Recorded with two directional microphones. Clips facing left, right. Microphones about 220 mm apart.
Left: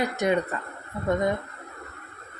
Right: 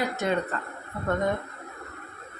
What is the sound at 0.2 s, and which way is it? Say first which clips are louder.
Speech: left 4 dB; 15° left (ahead or behind).